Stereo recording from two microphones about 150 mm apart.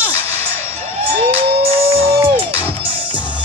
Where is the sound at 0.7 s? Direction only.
15° right (ahead or behind).